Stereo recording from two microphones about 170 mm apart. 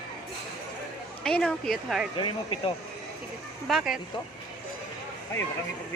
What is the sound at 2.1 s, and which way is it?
Speech, 25° left (ahead or behind).